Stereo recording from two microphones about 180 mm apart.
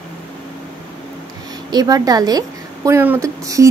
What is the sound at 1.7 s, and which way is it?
A woman's voice, 20° right (ahead or behind).